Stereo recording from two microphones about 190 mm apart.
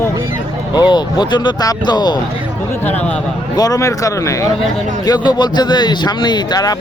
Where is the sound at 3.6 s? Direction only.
20° left (ahead or behind).